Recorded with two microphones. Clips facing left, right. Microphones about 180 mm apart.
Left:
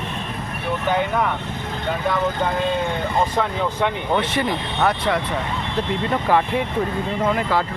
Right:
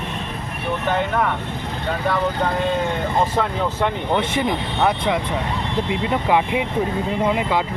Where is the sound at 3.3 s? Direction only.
5° right (ahead or behind).